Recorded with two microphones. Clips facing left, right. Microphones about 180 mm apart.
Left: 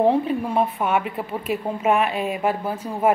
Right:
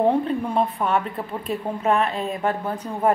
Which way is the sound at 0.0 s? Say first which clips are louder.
Left 1 dB; 5° left (ahead or behind).